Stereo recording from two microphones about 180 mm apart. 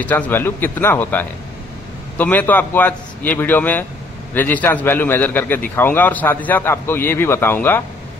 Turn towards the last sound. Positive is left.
turn(degrees=10)  # may be behind; listen again after turning